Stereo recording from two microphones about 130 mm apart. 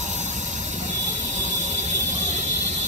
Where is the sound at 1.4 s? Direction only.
70° right (ahead or behind).